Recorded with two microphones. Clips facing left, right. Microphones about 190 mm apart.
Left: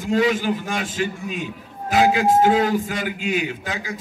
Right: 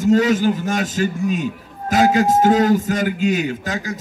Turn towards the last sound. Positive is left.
turn(degrees=-40)  # may be behind; listen again after turning